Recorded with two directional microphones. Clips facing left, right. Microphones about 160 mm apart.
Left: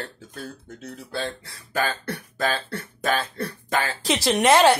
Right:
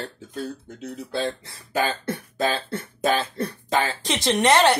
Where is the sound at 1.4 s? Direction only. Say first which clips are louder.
Right 2 dB; 20° right (ahead or behind).